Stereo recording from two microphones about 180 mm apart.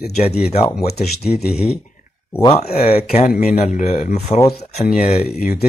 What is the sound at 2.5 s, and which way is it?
Speech, 35° left (ahead or behind).